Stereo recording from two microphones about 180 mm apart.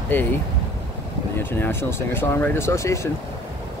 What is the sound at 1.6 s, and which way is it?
Speech, 10° left (ahead or behind).